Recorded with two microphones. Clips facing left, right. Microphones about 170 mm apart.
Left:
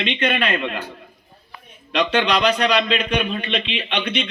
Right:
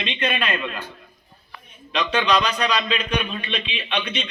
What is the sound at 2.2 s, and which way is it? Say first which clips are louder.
A man's voice: even; 60° left (ahead or behind).